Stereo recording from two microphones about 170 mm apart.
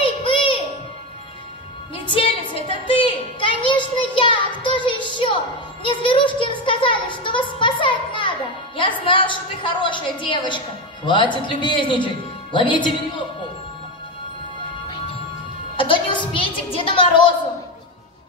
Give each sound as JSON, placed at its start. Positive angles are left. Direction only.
{"t": 0.0, "sound": "music", "side_deg": 30}
{"t": 2.0, "sound": "a sound", "side_deg": 30}
{"t": 5.9, "sound": "music", "side_deg": 30}
{"t": 6.6, "sound": "a sound", "side_deg": 30}
{"t": 11.1, "sound": "speech", "side_deg": 30}
{"t": 15.7, "sound": "music", "side_deg": 30}